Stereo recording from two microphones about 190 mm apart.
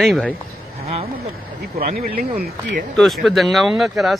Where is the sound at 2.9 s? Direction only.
Centre (ahead or behind).